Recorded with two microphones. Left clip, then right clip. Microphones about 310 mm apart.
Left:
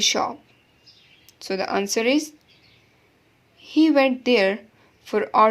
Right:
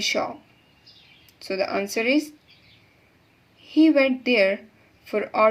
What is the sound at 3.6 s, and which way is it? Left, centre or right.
Speech, left.